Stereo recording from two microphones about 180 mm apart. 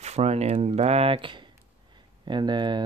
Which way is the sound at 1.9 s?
25° right (ahead or behind).